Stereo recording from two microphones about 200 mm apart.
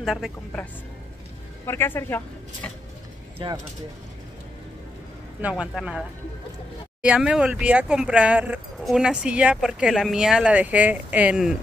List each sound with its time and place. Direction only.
0.0 s speech: centre (ahead or behind)
1.7 s speech: 10° left (ahead or behind)
3.4 s speech: 25° right (ahead or behind)
5.4 s speech: 5° right (ahead or behind)